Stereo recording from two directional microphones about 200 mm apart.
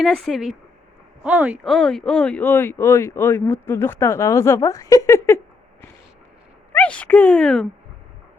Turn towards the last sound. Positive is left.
turn(degrees=5)  # may be behind; listen again after turning